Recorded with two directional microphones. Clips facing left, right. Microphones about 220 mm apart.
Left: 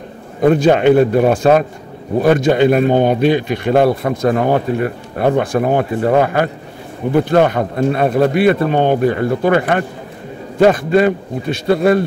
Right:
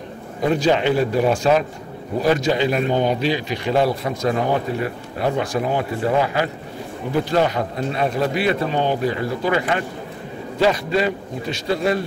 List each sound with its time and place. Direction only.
0.4 s a man's voice: 55° left (ahead or behind)